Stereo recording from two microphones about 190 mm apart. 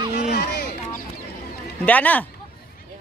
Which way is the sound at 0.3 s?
55° left (ahead or behind).